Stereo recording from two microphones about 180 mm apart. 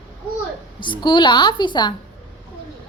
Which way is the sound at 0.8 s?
25° left (ahead or behind).